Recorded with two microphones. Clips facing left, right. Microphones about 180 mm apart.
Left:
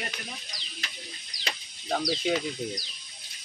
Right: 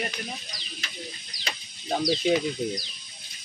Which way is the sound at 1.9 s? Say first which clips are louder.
Right 4 dB; 20° right (ahead or behind).